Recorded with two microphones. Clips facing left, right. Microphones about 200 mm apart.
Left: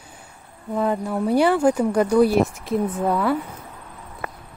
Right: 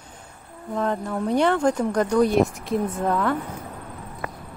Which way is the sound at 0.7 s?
10° left (ahead or behind).